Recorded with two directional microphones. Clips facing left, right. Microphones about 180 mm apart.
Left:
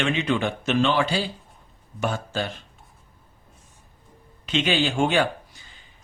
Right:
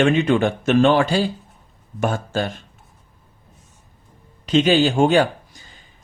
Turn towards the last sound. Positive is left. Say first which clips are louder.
# right 5 dB
turn(degrees=-40)  # may be behind; listen again after turning